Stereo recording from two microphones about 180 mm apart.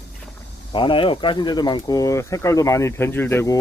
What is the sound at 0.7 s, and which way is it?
Speech, 30° left (ahead or behind).